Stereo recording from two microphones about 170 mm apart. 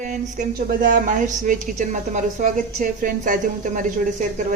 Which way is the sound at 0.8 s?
55° right (ahead or behind).